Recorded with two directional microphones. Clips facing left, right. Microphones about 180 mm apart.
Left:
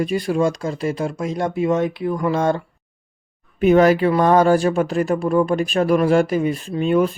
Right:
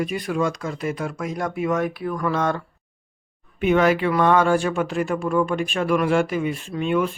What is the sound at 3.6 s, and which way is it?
Speech, 40° left (ahead or behind).